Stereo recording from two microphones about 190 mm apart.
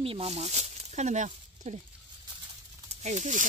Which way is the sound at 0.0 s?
30° right (ahead or behind).